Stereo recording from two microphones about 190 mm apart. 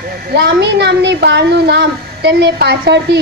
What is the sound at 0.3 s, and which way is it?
A woman's voice, 60° right (ahead or behind).